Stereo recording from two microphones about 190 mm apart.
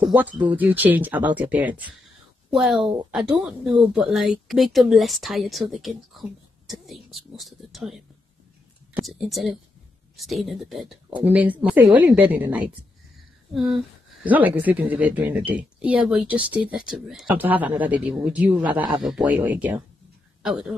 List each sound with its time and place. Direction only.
0.0 s speech: 10° right (ahead or behind)
18.8 s speech: 25° right (ahead or behind)
19.0 s speech: 5° right (ahead or behind)